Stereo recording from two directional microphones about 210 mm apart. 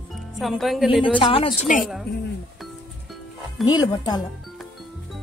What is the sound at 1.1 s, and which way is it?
Speech, 25° left (ahead or behind).